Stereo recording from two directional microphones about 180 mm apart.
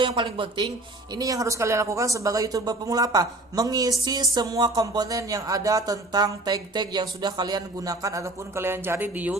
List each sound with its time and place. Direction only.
0.0 s speech: 25° right (ahead or behind); by 9.4 s 10° right (ahead or behind)